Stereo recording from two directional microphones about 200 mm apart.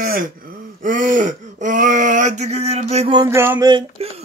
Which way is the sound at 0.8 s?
40° right (ahead or behind).